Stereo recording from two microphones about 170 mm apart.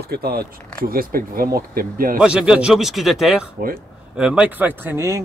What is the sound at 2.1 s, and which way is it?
A man's voice, 5° right (ahead or behind).